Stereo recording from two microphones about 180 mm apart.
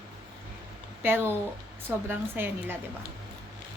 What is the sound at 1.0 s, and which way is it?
Speech, 10° right (ahead or behind).